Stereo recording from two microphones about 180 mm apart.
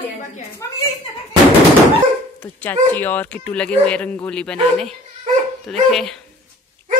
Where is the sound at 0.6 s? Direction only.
15° left (ahead or behind).